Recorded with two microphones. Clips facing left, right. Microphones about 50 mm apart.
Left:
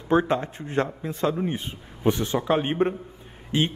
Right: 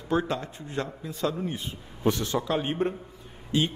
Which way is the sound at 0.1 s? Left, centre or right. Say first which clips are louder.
Left 6 dB; left.